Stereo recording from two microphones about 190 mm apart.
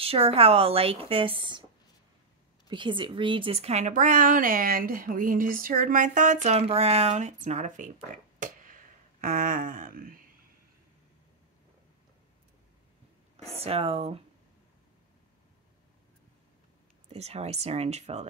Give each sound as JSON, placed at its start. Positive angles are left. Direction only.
{"t": 0.0, "sound": "a woman's voice", "side_deg": -30}
{"t": 2.7, "sound": "a woman's voice", "side_deg": -25}
{"t": 13.5, "sound": "a woman's voice", "side_deg": -30}
{"t": 17.1, "sound": "a woman's voice", "side_deg": -35}